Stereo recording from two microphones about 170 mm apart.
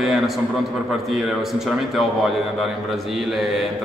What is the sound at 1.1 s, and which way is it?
A man's voice, centre (ahead or behind).